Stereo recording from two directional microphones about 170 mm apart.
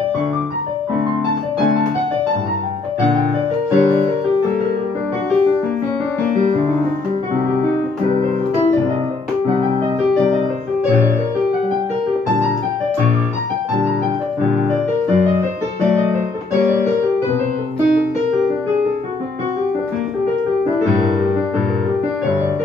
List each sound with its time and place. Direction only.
3.7 s music: 35° right (ahead or behind)